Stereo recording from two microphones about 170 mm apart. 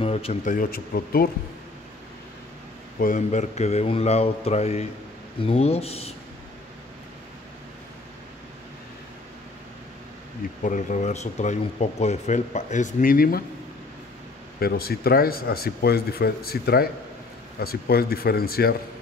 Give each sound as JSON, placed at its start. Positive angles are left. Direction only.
{"t": 0.0, "sound": "speech", "side_deg": 35}
{"t": 3.0, "sound": "speech", "side_deg": 50}
{"t": 10.6, "sound": "speech", "side_deg": 50}
{"t": 14.6, "sound": "speech", "side_deg": 65}